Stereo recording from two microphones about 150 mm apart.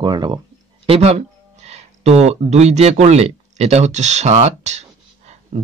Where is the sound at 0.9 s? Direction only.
45° right (ahead or behind).